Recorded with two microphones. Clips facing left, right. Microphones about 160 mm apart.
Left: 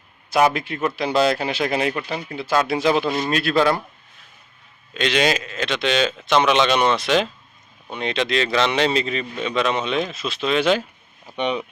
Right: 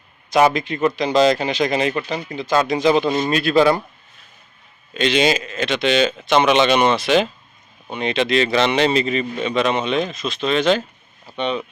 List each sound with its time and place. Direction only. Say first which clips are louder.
0.3 s speech: right 3 dB; 5° left (ahead or behind)
4.9 s speech: right 3 dB; centre (ahead or behind); by 11.6 s 15° left (ahead or behind)